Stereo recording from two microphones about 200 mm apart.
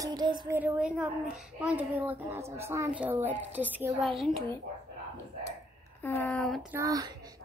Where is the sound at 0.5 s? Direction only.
10° right (ahead or behind).